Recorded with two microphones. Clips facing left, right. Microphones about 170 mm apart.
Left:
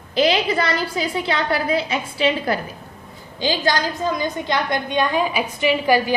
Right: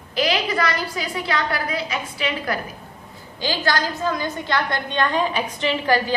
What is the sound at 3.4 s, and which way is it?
A woman's voice, 15° left (ahead or behind).